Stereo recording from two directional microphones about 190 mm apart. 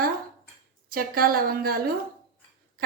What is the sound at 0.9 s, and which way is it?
Speech, 50° right (ahead or behind).